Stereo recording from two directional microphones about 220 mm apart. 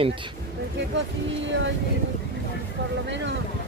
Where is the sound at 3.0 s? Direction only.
55° right (ahead or behind).